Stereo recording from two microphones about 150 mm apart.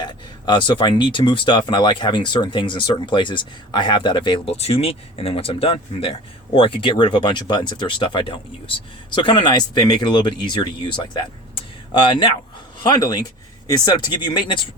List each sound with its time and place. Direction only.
0.0 s speech: 30° left (ahead or behind)